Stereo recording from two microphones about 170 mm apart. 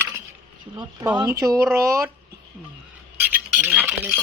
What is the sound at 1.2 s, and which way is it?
Speech, 15° right (ahead or behind).